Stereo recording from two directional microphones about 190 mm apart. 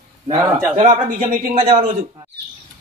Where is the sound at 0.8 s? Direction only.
40° right (ahead or behind).